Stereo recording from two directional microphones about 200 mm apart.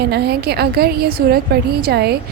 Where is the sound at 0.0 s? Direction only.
55° right (ahead or behind).